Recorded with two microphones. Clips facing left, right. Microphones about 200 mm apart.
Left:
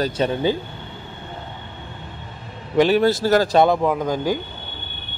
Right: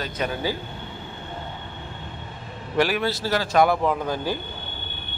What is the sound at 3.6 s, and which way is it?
Speech, 15° left (ahead or behind).